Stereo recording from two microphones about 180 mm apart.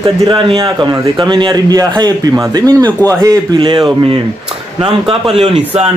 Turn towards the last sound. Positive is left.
turn(degrees=-35)  # may be behind; listen again after turning